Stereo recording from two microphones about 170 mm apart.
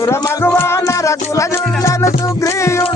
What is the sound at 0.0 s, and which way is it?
Music, 15° left (ahead or behind).